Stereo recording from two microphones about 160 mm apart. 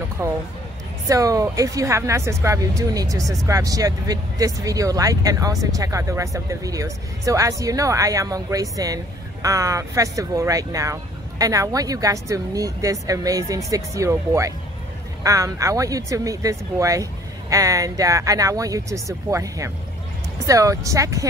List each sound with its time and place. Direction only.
0.2 s speech: 15° right (ahead or behind)